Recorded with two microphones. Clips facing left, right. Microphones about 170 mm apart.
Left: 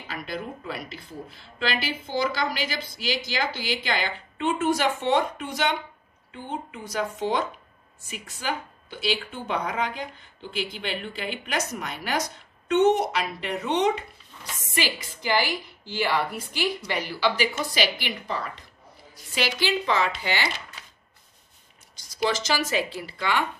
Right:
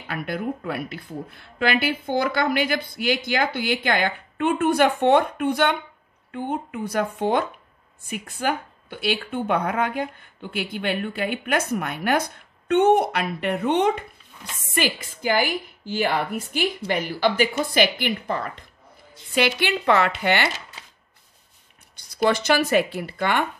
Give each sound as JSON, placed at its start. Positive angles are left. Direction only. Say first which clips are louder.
{"t": 0.0, "sound": "speech", "louder": "right 5 dB", "side_deg": -55}
{"t": 21.9, "sound": "speech", "louder": "right 5 dB", "side_deg": -60}